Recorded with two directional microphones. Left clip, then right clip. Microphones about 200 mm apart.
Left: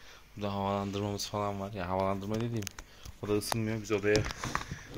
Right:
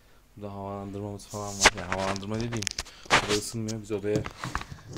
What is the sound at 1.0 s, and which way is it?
Speech, 5° right (ahead or behind).